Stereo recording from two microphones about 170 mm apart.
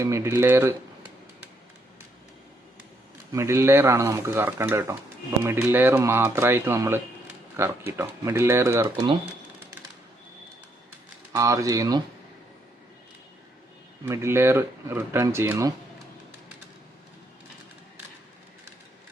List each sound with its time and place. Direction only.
0.0 s speech: 15° right (ahead or behind)
3.3 s speech: 15° right (ahead or behind)
8.8 s speech: 25° right (ahead or behind)
11.3 s speech: 20° right (ahead or behind)
14.0 s speech: 15° right (ahead or behind)